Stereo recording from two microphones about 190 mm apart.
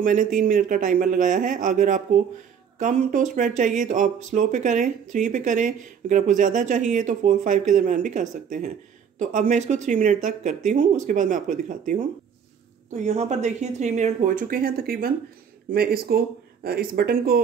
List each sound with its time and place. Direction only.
0.0 s a man's voice: 45° right (ahead or behind)